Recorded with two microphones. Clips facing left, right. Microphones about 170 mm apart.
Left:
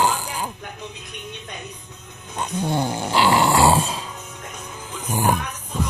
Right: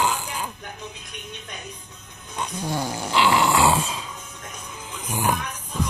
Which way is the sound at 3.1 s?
40° left (ahead or behind).